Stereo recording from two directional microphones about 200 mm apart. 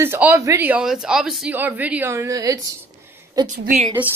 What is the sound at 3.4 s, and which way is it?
Speech, 40° right (ahead or behind).